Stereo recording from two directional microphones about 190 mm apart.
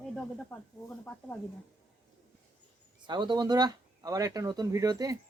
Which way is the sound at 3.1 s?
20° right (ahead or behind).